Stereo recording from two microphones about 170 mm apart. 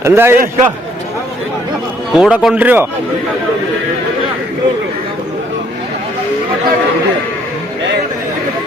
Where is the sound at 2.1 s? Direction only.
5° right (ahead or behind).